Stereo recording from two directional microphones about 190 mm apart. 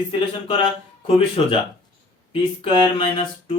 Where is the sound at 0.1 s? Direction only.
25° left (ahead or behind).